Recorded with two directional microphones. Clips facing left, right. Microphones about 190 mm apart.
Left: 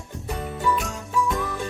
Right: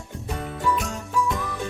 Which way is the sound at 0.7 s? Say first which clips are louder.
Even; centre (ahead or behind).